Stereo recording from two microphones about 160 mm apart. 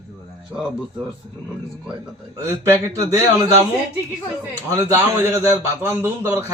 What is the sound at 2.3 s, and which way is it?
Speech, 15° right (ahead or behind).